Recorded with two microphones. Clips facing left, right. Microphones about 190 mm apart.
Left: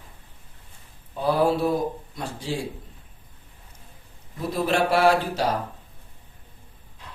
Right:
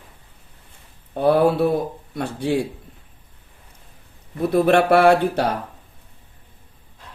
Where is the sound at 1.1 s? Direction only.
60° right (ahead or behind).